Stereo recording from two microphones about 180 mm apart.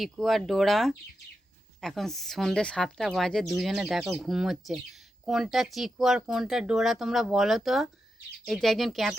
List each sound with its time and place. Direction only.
0.0 s speech: centre (ahead or behind)